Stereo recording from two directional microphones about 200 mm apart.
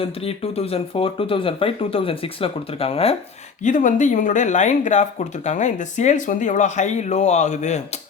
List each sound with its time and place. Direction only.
0.0 s speech: 30° left (ahead or behind)
3.6 s speech: 40° left (ahead or behind)